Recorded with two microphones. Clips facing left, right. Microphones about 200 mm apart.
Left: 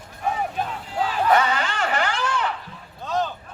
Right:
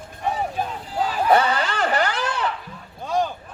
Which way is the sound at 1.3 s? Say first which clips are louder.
Right 3 dB; 35° right (ahead or behind).